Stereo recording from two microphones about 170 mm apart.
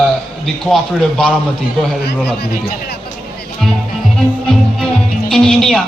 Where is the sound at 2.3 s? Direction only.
70° left (ahead or behind).